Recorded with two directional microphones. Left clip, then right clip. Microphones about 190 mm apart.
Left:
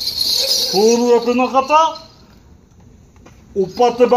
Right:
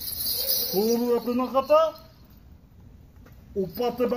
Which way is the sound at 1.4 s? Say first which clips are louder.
Left 8 dB; 5° left (ahead or behind).